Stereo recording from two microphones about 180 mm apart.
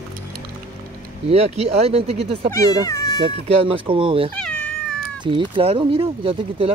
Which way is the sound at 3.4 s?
30° right (ahead or behind).